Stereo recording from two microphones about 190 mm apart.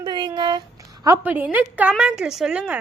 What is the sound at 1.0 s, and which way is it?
A woman's voice, 10° right (ahead or behind).